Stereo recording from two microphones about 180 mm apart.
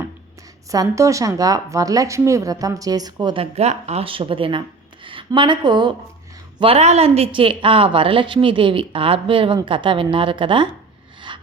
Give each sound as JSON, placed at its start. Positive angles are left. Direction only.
{"t": 0.7, "sound": "a woman's voice", "side_deg": -20}